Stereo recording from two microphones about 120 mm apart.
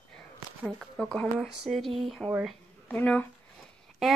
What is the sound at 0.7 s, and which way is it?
Speech, centre (ahead or behind).